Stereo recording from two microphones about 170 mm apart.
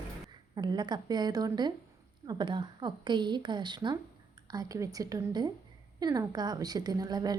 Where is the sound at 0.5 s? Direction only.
25° right (ahead or behind).